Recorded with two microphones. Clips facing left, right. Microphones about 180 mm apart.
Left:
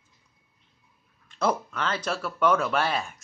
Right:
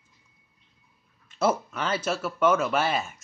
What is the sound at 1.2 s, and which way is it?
Speech, 5° right (ahead or behind).